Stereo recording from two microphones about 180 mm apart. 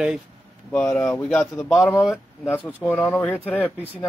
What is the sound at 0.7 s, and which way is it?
Speech, 10° left (ahead or behind).